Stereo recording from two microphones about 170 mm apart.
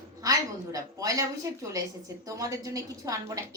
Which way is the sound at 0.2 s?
20° right (ahead or behind).